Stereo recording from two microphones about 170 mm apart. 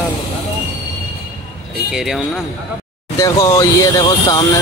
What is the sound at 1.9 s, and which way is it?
Speech, centre (ahead or behind).